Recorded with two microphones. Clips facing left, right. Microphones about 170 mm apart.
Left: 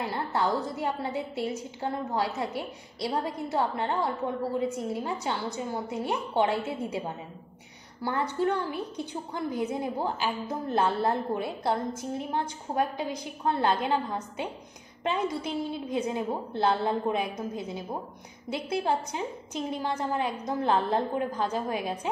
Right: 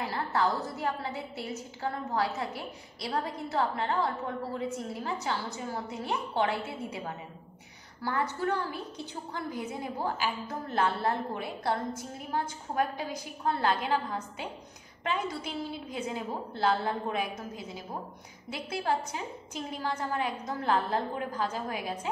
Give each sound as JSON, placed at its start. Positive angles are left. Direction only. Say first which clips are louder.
{"t": 0.1, "sound": "a woman's voice", "louder": "left 1 dB", "side_deg": 25}